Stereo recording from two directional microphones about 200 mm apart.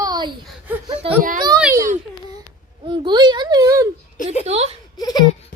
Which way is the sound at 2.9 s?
25° right (ahead or behind).